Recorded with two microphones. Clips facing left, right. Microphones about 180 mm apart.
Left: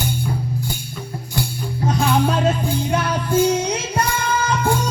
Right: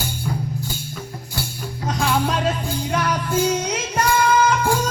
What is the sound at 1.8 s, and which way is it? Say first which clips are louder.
Music: left 3 dB; 25° left (ahead or behind).